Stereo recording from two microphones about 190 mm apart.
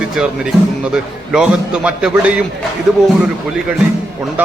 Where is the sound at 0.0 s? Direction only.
5° right (ahead or behind).